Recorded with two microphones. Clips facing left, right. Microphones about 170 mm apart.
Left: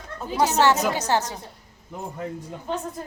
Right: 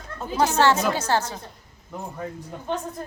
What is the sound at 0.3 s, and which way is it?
A woman's voice, 15° left (ahead or behind).